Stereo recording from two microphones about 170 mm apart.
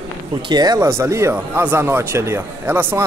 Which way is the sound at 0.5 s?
25° right (ahead or behind).